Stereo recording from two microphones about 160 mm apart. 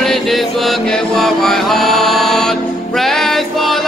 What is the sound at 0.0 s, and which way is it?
Music, centre (ahead or behind).